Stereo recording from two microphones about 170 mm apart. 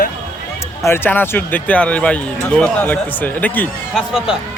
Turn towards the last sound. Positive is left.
turn(degrees=0)  # may be behind; listen again after turning